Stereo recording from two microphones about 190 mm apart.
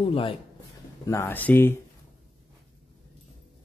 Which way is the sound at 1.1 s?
10° left (ahead or behind).